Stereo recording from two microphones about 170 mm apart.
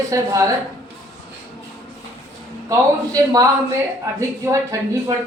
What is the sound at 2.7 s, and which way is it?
A man's voice, 20° right (ahead or behind).